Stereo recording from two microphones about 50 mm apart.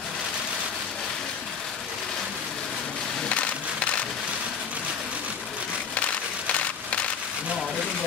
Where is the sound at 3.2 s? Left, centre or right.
Left.